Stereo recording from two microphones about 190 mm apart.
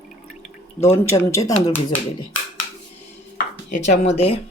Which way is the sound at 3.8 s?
35° left (ahead or behind).